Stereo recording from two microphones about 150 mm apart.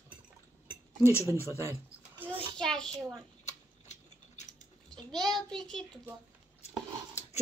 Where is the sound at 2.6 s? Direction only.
5° left (ahead or behind).